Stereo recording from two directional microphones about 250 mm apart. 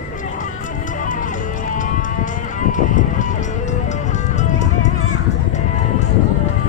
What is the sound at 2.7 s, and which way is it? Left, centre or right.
Music, left.